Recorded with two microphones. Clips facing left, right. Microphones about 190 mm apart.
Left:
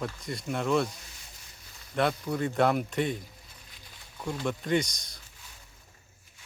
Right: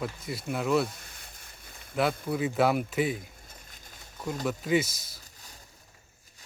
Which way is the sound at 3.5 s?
45° right (ahead or behind).